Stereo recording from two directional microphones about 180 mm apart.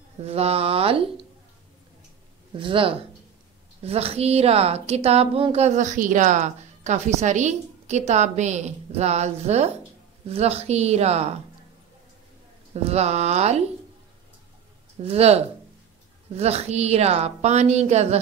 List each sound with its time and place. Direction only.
0.2 s a woman's voice: 35° right (ahead or behind)
2.6 s a woman's voice: 30° right (ahead or behind)
12.8 s a woman's voice: 35° right (ahead or behind)
15.0 s a woman's voice: 35° right (ahead or behind)